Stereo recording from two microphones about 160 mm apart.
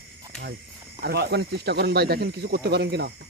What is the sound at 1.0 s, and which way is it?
Speech, 90° right.